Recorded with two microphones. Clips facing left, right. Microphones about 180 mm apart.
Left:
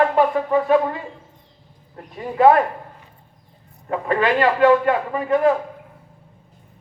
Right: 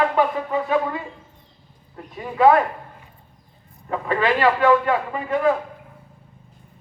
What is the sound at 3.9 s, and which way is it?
A man's voice, 50° left (ahead or behind).